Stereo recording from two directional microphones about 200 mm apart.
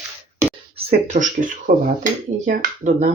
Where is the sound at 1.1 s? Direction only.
40° right (ahead or behind).